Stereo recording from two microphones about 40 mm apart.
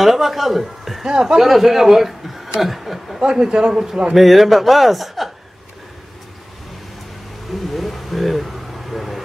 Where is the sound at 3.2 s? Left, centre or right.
Centre.